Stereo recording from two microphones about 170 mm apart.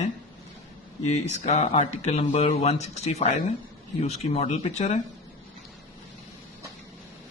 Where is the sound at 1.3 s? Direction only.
40° left (ahead or behind).